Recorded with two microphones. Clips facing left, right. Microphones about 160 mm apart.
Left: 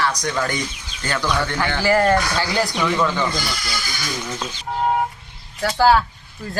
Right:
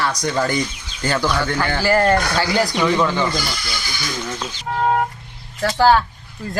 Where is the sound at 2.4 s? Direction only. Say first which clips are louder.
Right 3 dB; 10° right (ahead or behind).